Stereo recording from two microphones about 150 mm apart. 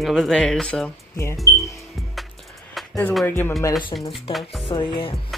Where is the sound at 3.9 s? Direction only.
25° left (ahead or behind).